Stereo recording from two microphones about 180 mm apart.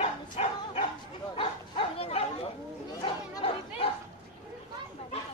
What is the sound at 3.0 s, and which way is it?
Chatter, 30° left (ahead or behind).